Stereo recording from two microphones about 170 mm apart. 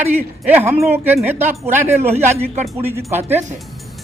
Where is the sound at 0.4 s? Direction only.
10° right (ahead or behind).